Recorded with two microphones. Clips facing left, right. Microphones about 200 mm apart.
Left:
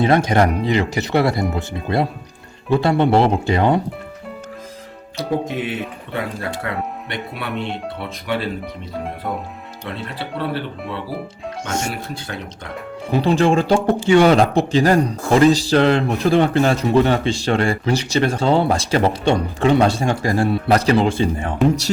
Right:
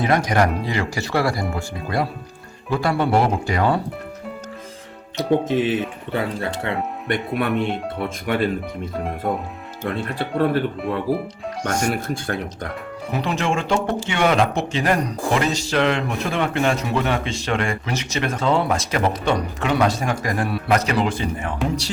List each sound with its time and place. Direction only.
0.0 s speech: 25° left (ahead or behind)
5.5 s speech: 30° right (ahead or behind)
7.1 s speech: 50° right (ahead or behind)
9.9 s speech: 50° right (ahead or behind)
11.6 s speech: 25° left (ahead or behind)
12.0 s speech: 50° right (ahead or behind)
13.1 s a man's voice: 30° left (ahead or behind)